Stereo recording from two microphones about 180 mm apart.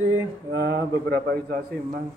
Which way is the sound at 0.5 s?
65° right (ahead or behind).